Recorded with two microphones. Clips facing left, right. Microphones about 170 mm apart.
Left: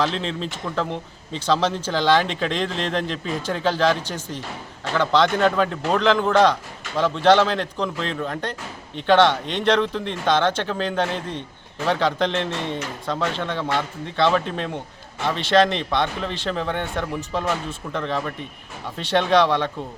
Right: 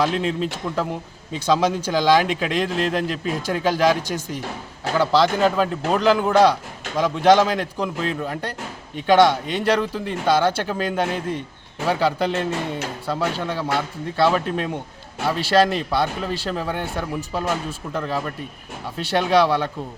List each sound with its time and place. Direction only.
0.0 s a man's voice: 10° right (ahead or behind)